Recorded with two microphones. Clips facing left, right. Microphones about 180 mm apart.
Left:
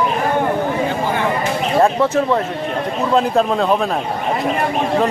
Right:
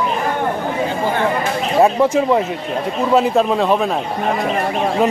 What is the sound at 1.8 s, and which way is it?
Speech, 10° right (ahead or behind).